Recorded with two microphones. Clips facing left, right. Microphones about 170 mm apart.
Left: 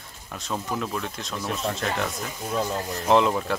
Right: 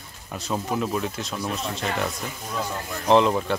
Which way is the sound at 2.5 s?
30° left (ahead or behind).